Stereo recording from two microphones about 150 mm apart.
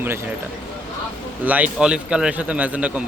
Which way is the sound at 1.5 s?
10° right (ahead or behind).